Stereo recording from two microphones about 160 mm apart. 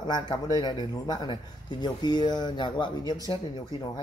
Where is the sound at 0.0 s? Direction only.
30° left (ahead or behind).